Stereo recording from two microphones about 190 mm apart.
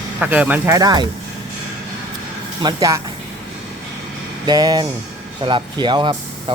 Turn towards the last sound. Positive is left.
turn(degrees=-25)  # may be behind; listen again after turning